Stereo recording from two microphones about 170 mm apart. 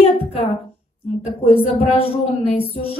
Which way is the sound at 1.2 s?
35° left (ahead or behind).